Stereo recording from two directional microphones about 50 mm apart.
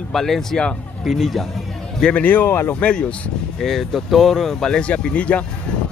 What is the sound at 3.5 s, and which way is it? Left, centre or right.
Speech, centre.